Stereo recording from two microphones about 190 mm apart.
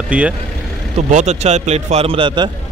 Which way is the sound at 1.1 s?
40° right (ahead or behind).